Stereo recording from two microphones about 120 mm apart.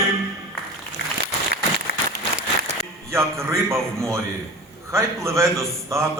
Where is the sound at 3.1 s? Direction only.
20° right (ahead or behind).